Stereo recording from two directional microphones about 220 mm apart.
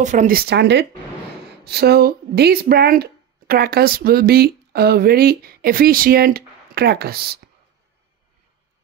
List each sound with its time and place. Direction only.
0.0 s speech: 35° right (ahead or behind)